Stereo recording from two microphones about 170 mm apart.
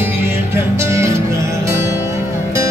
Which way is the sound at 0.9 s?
15° right (ahead or behind).